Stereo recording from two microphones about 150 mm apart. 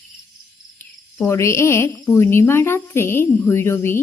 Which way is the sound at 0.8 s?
15° left (ahead or behind).